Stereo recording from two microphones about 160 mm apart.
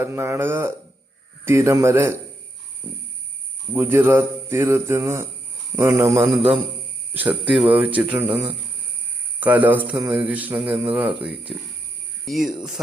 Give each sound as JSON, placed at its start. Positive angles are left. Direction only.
{"t": 0.0, "sound": "speech", "side_deg": -15}
{"t": 3.7, "sound": "speech", "side_deg": -15}